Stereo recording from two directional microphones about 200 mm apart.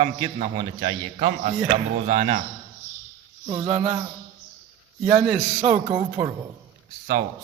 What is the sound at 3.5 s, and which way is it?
Speech, 25° right (ahead or behind).